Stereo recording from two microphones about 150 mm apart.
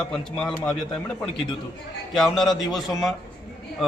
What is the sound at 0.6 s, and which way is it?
A man's voice, 5° left (ahead or behind).